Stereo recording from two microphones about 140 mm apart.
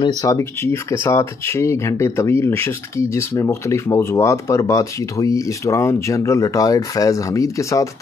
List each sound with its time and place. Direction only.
0.0 s speech: 30° left (ahead or behind)
0.4 s speech: 20° left (ahead or behind)